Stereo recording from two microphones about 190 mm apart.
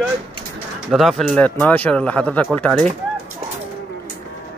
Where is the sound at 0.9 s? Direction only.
Centre (ahead or behind).